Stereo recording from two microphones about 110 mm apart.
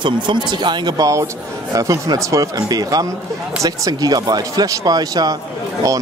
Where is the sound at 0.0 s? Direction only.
45° right (ahead or behind).